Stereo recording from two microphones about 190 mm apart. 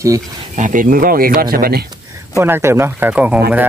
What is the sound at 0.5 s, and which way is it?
Speech, 45° right (ahead or behind).